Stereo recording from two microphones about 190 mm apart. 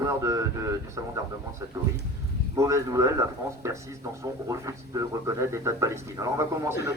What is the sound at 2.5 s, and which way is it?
Speech, 15° right (ahead or behind).